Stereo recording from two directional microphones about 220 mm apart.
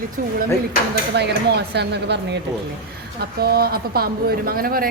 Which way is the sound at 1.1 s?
50° right (ahead or behind).